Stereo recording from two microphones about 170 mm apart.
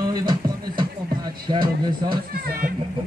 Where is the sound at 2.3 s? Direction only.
60° right (ahead or behind).